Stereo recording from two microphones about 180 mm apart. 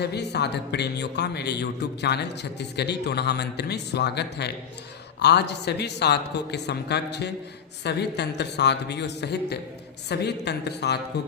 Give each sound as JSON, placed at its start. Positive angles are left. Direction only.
{"t": 0.0, "sound": "a man's voice", "side_deg": 70}